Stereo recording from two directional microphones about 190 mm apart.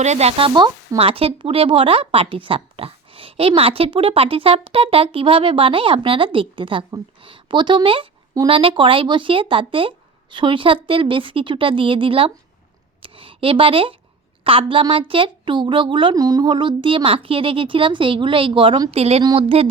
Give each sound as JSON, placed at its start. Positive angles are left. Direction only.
{"t": 0.0, "sound": "speech", "side_deg": -35}
{"t": 13.0, "sound": "a sound", "side_deg": -30}
{"t": 14.4, "sound": "speech", "side_deg": -30}